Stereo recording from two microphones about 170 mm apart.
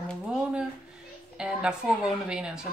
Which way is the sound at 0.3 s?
5° right (ahead or behind).